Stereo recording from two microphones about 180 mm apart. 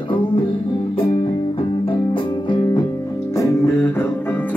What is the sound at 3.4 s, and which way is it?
Music, 15° left (ahead or behind).